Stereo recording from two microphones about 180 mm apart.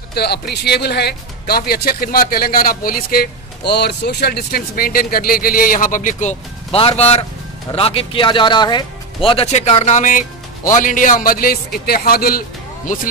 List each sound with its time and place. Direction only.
0.1 s speech: 65° left (ahead or behind)